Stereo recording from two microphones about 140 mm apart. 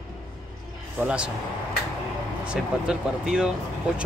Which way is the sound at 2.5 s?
5° right (ahead or behind).